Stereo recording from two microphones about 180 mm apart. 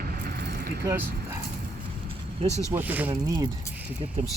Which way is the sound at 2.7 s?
10° right (ahead or behind).